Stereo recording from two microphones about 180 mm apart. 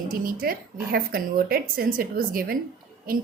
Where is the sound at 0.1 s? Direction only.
55° right (ahead or behind).